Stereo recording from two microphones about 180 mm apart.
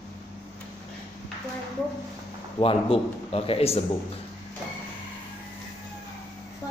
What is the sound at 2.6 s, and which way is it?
A man's voice, 30° left (ahead or behind).